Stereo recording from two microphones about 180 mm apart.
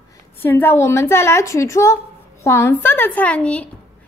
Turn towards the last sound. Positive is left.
turn(degrees=5)  # may be behind; listen again after turning